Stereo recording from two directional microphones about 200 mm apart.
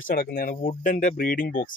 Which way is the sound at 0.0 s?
45° left (ahead or behind).